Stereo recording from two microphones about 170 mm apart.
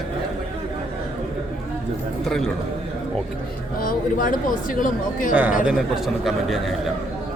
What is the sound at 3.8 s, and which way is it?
Speech, 55° left (ahead or behind).